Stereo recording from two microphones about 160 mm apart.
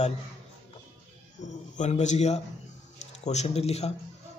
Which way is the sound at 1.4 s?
50° left (ahead or behind).